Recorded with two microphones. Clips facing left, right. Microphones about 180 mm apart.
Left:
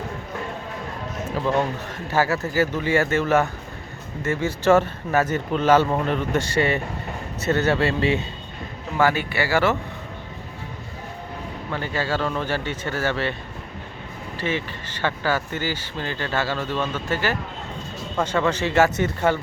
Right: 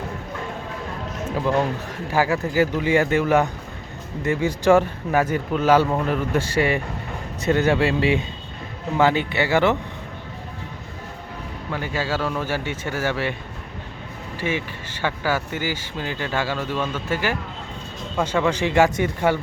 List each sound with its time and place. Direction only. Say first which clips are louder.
1.5 s speech: right 1 dB; 10° right (ahead or behind)
11.7 s speech: even; 10° right (ahead or behind)
14.3 s speech: right 1 dB; 10° right (ahead or behind)